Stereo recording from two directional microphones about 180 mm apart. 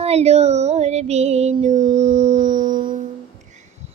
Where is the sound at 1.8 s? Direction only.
25° right (ahead or behind).